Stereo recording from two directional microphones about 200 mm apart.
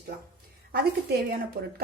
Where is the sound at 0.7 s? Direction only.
50° right (ahead or behind).